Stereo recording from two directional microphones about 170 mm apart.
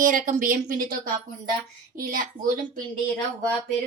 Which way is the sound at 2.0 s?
55° right (ahead or behind).